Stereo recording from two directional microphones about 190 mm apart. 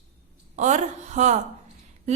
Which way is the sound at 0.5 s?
40° right (ahead or behind).